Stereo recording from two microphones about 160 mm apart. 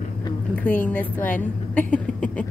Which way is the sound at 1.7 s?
10° left (ahead or behind).